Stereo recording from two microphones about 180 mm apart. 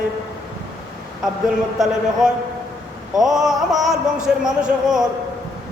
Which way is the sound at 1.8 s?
Centre (ahead or behind).